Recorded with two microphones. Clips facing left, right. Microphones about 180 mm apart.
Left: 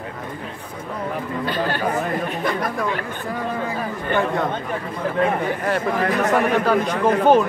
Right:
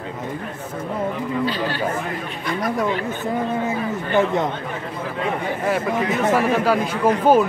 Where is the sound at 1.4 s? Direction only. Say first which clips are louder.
Left 1 dB; 50° left (ahead or behind).